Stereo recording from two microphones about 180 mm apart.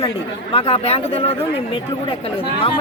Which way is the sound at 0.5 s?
35° left (ahead or behind).